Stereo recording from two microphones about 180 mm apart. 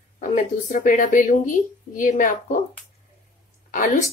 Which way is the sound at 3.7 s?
50° left (ahead or behind).